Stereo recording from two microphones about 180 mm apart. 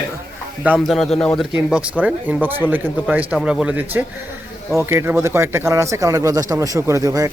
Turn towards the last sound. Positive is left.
turn(degrees=-20)  # may be behind; listen again after turning